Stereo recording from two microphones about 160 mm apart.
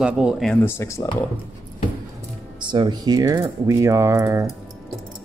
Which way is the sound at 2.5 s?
30° right (ahead or behind).